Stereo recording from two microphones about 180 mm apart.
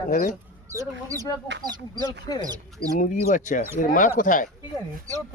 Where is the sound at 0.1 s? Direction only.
50° left (ahead or behind).